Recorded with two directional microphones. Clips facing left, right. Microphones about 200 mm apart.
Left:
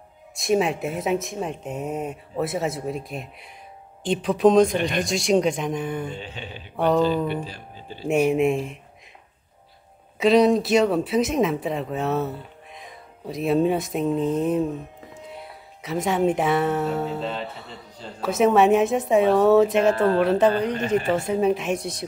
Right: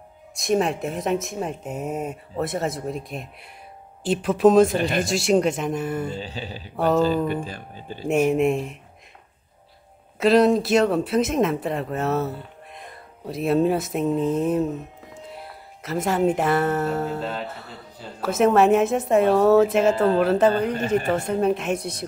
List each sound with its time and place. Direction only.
0.4 s speech: 5° left (ahead or behind)
6.1 s speech: 35° right (ahead or behind)
7.4 s speech: 50° right (ahead or behind)
8.1 s speech: centre (ahead or behind)
10.1 s speech: centre (ahead or behind)